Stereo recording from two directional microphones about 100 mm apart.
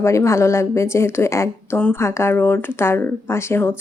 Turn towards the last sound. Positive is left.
turn(degrees=25)  # may be behind; listen again after turning